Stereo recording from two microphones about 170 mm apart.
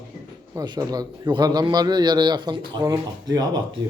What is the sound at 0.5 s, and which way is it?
A man's voice, 25° right (ahead or behind).